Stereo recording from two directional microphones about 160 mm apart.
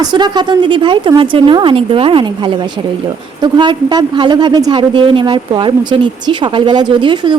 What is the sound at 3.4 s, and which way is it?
A woman's voice, 30° right (ahead or behind).